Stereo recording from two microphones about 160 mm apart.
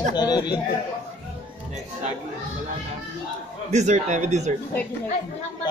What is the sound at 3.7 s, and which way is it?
Speech, 45° right (ahead or behind).